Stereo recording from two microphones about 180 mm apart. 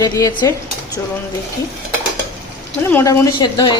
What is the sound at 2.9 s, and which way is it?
Speech, 15° left (ahead or behind).